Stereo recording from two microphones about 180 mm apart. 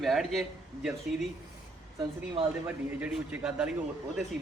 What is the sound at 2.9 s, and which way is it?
Speech, 5° right (ahead or behind).